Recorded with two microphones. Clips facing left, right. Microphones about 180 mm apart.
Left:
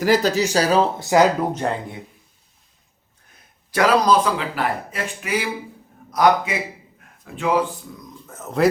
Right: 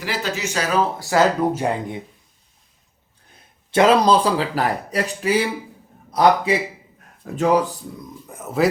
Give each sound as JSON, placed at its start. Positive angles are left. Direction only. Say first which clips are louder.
{"t": 0.0, "sound": "speech", "louder": "left 8 dB", "side_deg": 40}
{"t": 1.4, "sound": "speech", "louder": "right 2 dB", "side_deg": -10}
{"t": 3.7, "sound": "speech", "louder": "right 2 dB", "side_deg": -25}
{"t": 7.3, "sound": "speech", "louder": "right 3 dB", "side_deg": -40}
{"t": 8.3, "sound": "speech", "louder": "left 1 dB", "side_deg": -10}